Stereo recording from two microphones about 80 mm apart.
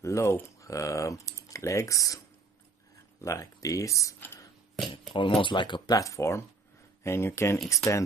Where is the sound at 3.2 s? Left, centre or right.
Left.